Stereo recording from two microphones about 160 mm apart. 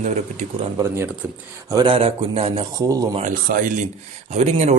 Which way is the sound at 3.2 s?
60° right (ahead or behind).